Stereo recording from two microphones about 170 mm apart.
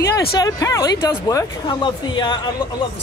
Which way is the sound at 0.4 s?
20° left (ahead or behind).